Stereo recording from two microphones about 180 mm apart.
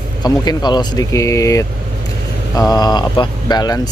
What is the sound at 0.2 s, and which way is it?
Speech, 25° left (ahead or behind).